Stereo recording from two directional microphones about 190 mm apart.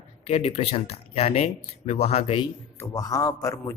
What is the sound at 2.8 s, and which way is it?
Speech, 20° left (ahead or behind).